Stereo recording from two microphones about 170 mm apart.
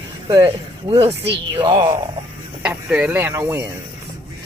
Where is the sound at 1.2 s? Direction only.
90° right.